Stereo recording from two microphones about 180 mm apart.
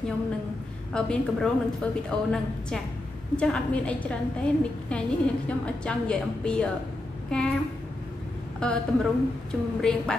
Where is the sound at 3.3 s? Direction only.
5° left (ahead or behind).